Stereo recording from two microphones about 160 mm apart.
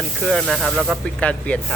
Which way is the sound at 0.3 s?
Centre (ahead or behind).